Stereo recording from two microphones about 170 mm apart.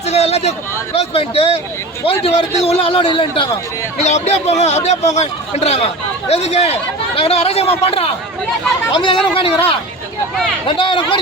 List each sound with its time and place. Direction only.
0.0 s a sound: 40° left (ahead or behind)
0.9 s a man's voice: 35° left (ahead or behind)
3.9 s a man's voice: 40° left (ahead or behind)
10.7 s speech: 30° left (ahead or behind)